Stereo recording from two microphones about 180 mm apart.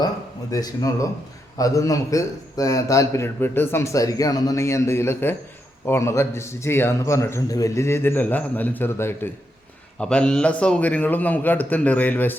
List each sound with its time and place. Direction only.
0.5 s a man's voice: 20° left (ahead or behind)